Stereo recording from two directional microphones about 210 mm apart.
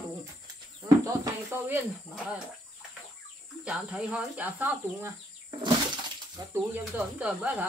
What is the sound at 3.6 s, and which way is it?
Speech, 5° right (ahead or behind).